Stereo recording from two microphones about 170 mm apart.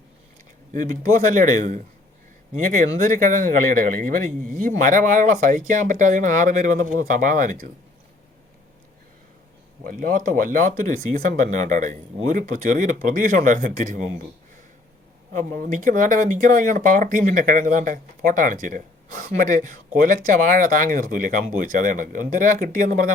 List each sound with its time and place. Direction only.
0.7 s speech: 50° right (ahead or behind)
9.8 s speech: 55° right (ahead or behind)
15.3 s speech: 45° right (ahead or behind)